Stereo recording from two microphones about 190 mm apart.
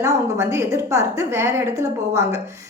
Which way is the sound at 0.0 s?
15° right (ahead or behind).